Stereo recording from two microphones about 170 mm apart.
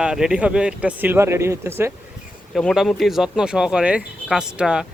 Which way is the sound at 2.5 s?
Centre (ahead or behind).